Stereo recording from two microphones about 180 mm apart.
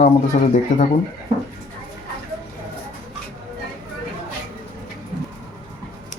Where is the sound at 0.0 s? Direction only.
45° left (ahead or behind).